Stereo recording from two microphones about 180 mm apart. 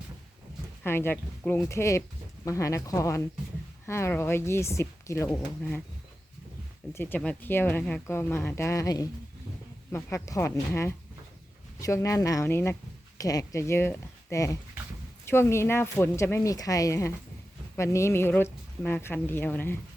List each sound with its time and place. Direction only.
0.9 s speech: 10° left (ahead or behind)
6.9 s speech: 10° left (ahead or behind)